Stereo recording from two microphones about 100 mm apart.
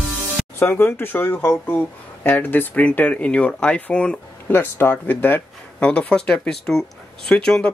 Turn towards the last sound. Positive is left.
turn(degrees=10)  # may be behind; listen again after turning